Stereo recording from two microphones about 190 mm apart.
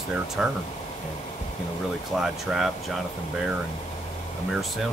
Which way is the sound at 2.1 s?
Centre (ahead or behind).